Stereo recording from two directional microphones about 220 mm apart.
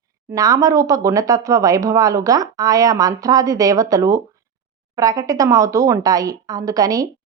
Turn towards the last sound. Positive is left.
turn(degrees=-15)  # may be behind; listen again after turning